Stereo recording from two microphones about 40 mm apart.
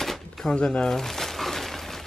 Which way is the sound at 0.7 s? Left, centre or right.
Centre.